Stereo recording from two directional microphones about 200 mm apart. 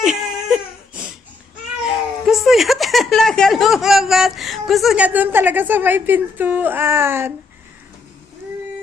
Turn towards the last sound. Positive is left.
turn(degrees=-10)  # may be behind; listen again after turning